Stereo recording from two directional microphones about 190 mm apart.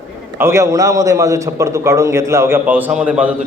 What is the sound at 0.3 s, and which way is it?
A man's voice, 15° right (ahead or behind).